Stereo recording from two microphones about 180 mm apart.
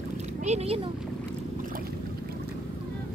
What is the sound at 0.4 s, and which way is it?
Speech, 35° right (ahead or behind).